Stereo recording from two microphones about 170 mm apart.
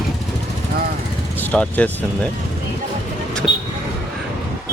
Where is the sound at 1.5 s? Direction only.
10° left (ahead or behind).